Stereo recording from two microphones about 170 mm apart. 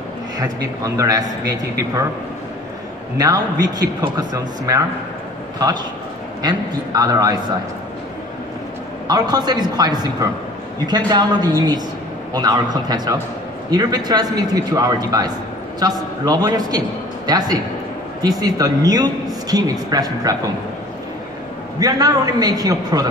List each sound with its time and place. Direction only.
0.4 s a man's voice: 20° right (ahead or behind)
3.2 s a man's voice: 20° right (ahead or behind)
6.4 s a man's voice: 20° right (ahead or behind)
9.0 s a man's voice: 25° right (ahead or behind)
21.7 s a man's voice: 20° right (ahead or behind)